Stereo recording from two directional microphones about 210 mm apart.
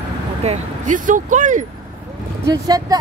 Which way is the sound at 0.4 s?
35° right (ahead or behind).